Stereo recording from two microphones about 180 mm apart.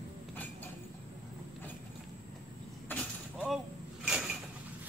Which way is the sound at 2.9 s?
5° left (ahead or behind).